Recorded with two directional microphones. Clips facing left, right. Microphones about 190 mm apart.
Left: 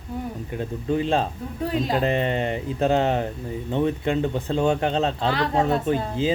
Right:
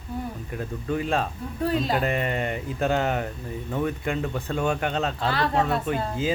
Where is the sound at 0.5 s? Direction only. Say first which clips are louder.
Left 4 dB; 25° left (ahead or behind).